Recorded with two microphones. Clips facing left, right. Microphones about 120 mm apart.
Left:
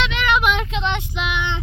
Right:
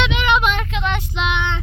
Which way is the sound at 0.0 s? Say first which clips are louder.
Right 2 dB; centre (ahead or behind).